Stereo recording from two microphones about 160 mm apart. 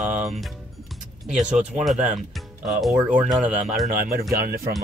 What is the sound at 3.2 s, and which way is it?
Speech, 5° right (ahead or behind).